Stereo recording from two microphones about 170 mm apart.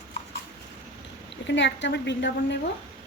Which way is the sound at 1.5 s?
90° left.